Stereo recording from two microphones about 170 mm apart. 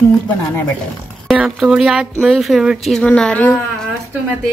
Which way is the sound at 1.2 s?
Centre (ahead or behind).